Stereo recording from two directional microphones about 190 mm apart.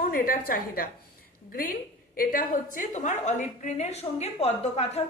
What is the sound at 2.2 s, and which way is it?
A woman's voice, 50° left (ahead or behind).